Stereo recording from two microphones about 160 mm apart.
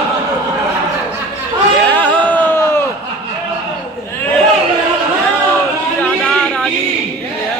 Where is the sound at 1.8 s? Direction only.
10° left (ahead or behind).